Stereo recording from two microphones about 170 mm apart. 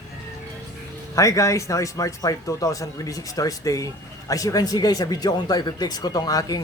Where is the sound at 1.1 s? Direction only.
20° left (ahead or behind).